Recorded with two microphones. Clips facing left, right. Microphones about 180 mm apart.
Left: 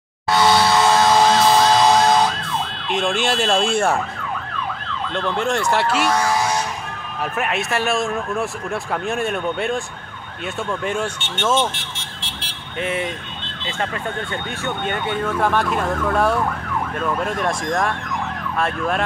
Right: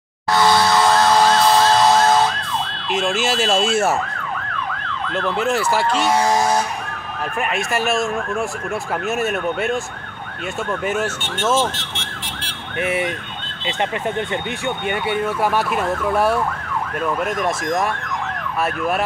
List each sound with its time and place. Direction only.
0.3 s emergency vehicle: centre (ahead or behind)
2.9 s speech: 5° right (ahead or behind)
5.1 s speech: 5° right (ahead or behind)
6.0 s speech: 25° right (ahead or behind)
6.3 s music: 45° right (ahead or behind)
7.3 s speech: centre (ahead or behind)
12.7 s speech: 10° right (ahead or behind)
14.9 s speech: 10° right (ahead or behind)